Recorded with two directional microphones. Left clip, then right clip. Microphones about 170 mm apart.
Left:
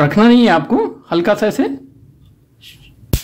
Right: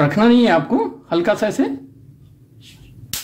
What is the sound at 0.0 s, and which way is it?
Speech, 25° left (ahead or behind).